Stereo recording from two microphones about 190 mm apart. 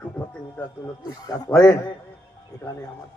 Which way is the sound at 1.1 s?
20° left (ahead or behind).